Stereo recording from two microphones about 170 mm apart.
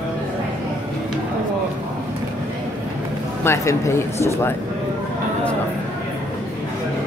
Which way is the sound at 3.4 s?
15° left (ahead or behind).